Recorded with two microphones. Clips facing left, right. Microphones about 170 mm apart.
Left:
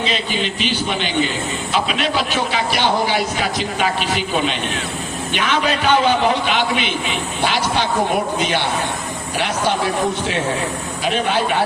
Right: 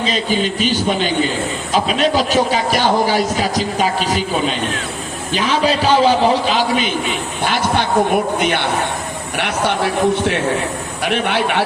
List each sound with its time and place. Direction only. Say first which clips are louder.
0.0 s a man's voice: right 4 dB; 40° right (ahead or behind)
7.4 s a man's voice: right 2 dB; 50° right (ahead or behind); by 11.6 s 65° right (ahead or behind)